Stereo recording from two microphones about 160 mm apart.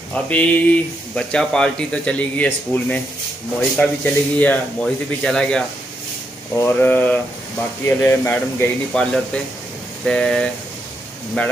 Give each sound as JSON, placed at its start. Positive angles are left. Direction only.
{"t": 0.1, "sound": "speech", "side_deg": 10}
{"t": 6.5, "sound": "speech", "side_deg": 15}